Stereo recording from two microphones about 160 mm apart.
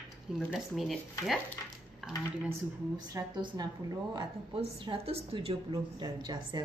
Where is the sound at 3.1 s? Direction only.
25° right (ahead or behind).